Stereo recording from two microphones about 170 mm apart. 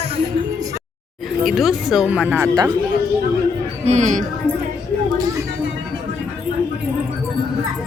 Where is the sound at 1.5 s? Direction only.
Centre (ahead or behind); by 2.7 s 20° right (ahead or behind).